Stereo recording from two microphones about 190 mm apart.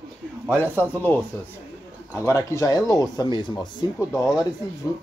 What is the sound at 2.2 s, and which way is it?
Speech, 15° left (ahead or behind).